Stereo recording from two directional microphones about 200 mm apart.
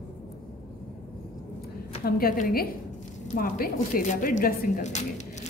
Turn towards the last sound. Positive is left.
turn(degrees=35)  # may be behind; listen again after turning